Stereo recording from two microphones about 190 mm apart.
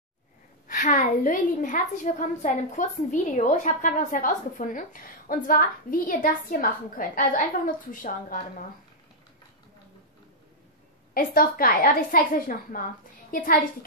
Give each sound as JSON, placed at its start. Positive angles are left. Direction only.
{"t": 0.7, "sound": "a woman's voice", "side_deg": 45}
{"t": 11.1, "sound": "a woman's voice", "side_deg": 50}